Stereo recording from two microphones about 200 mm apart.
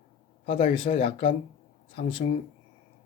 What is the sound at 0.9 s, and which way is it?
Speech, 30° left (ahead or behind).